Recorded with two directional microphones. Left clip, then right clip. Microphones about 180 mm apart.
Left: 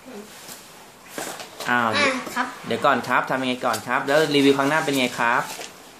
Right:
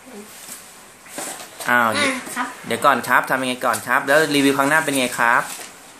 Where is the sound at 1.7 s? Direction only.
15° right (ahead or behind).